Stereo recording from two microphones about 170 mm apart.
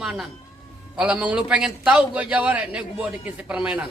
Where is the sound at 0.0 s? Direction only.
Centre (ahead or behind).